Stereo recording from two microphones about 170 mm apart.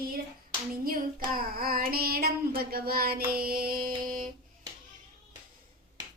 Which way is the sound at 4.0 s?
55° right (ahead or behind).